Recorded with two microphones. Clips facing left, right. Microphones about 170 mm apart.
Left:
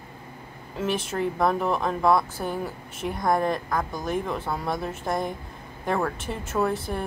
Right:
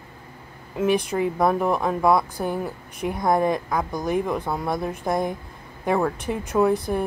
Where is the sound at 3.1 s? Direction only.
Centre (ahead or behind).